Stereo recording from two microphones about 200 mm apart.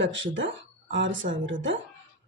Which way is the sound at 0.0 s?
70° right (ahead or behind).